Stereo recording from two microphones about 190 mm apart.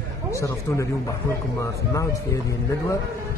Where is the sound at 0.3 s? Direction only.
15° left (ahead or behind).